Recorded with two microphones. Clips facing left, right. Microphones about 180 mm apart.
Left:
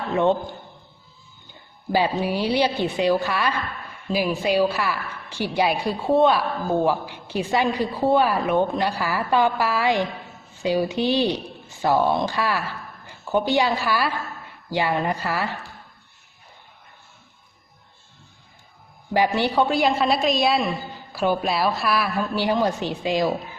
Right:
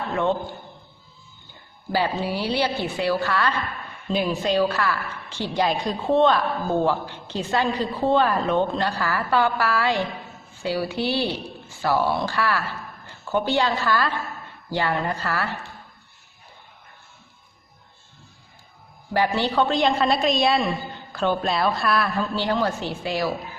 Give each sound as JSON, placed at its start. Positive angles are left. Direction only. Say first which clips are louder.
{"t": 0.1, "sound": "a man's voice", "louder": "left 4 dB", "side_deg": 20}
{"t": 1.9, "sound": "a woman's voice", "louder": "left 2 dB", "side_deg": 15}
{"t": 19.1, "sound": "a woman's voice", "louder": "left 1 dB", "side_deg": 15}